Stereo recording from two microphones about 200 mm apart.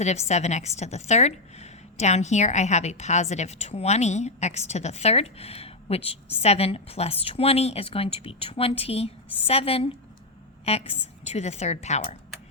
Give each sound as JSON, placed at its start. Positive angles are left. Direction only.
{"t": 0.0, "sound": "a woman's voice", "side_deg": 35}